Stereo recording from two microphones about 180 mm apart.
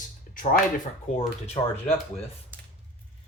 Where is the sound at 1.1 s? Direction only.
40° left (ahead or behind).